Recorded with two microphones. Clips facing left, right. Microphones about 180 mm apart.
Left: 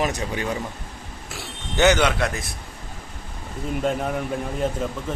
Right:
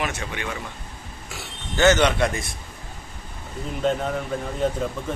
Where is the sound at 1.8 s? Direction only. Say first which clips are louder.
Even; 15° left (ahead or behind).